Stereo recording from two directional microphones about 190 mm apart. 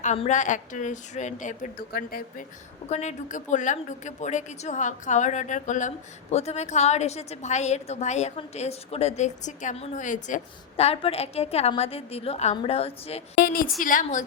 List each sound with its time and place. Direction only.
0.0 s a woman's voice: 40° left (ahead or behind)
2.9 s a woman's voice: 35° left (ahead or behind)
13.4 s a woman's voice: 50° left (ahead or behind)